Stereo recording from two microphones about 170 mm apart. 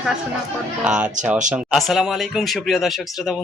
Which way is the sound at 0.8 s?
5° right (ahead or behind).